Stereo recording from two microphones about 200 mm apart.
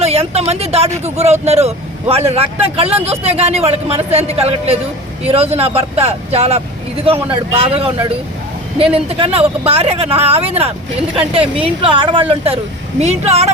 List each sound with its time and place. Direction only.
0.0 s speech: 30° right (ahead or behind)
9.0 s speech: 30° right (ahead or behind)